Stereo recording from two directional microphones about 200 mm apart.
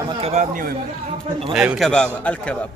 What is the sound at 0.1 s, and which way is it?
Speech, 30° right (ahead or behind).